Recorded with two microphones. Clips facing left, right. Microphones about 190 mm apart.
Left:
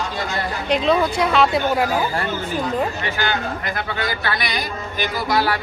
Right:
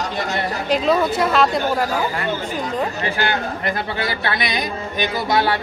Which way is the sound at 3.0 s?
30° right (ahead or behind).